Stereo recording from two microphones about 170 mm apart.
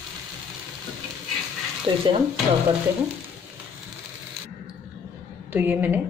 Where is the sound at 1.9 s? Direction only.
30° right (ahead or behind).